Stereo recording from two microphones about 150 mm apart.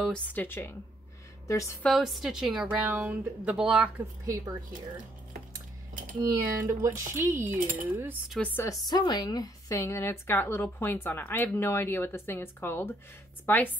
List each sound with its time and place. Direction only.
0.0 s a woman's voice: 10° left (ahead or behind)
1.8 s a woman's voice: centre (ahead or behind)
6.2 s speech: 20° right (ahead or behind)
8.3 s a woman's voice: 10° left (ahead or behind)
8.8 s a woman's voice: 25° left (ahead or behind)